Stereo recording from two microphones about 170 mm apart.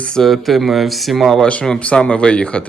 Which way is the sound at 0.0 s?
5° left (ahead or behind).